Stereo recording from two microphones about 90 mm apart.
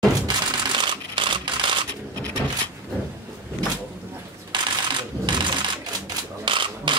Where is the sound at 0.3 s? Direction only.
60° right (ahead or behind).